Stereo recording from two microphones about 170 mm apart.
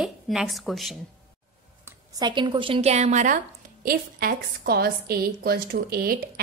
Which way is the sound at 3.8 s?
60° right (ahead or behind).